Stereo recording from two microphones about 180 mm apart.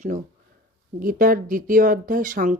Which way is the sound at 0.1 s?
50° right (ahead or behind).